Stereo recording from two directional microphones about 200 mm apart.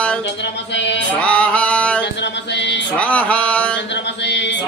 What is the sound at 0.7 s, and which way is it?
Mantra, 60° left (ahead or behind).